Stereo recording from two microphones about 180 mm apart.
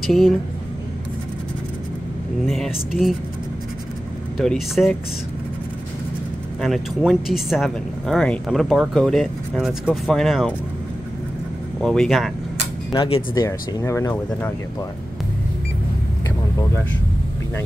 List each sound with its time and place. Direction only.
0.0 s speech: centre (ahead or behind)
2.4 s speech: centre (ahead or behind)
4.4 s speech: centre (ahead or behind)
6.6 s speech: centre (ahead or behind)
11.8 s speech: centre (ahead or behind)
12.9 s speech: 25° left (ahead or behind)